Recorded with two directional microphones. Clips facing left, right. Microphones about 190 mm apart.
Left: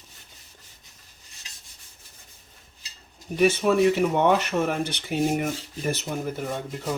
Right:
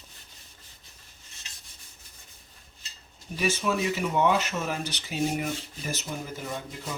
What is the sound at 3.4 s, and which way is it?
Speech, 60° left (ahead or behind).